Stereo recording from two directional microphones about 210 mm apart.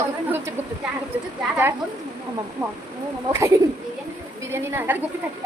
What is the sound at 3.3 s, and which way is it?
A woman's voice, 15° right (ahead or behind).